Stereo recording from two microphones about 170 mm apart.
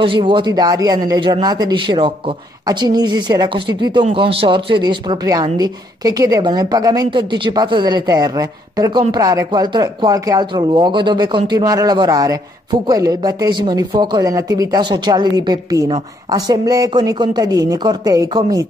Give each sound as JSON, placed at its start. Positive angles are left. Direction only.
{"t": 0.0, "sound": "a woman's voice", "side_deg": -30}